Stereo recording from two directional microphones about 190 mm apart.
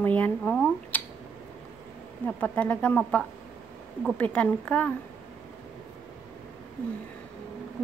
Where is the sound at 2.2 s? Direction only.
5° left (ahead or behind).